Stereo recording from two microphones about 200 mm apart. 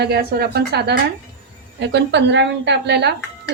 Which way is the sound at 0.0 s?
55° right (ahead or behind).